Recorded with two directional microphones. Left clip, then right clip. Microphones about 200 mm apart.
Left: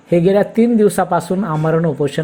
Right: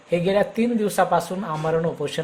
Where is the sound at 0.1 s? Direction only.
25° left (ahead or behind).